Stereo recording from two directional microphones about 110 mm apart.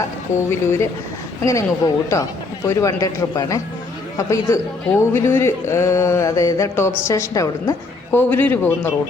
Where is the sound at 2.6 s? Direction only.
30° left (ahead or behind).